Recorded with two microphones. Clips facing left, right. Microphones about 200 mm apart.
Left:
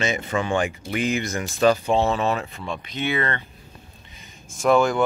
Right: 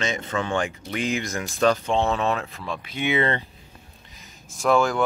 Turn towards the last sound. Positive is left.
turn(degrees=0)  # may be behind; listen again after turning